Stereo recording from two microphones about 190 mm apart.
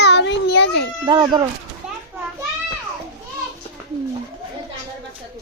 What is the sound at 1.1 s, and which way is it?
Speech, 25° right (ahead or behind).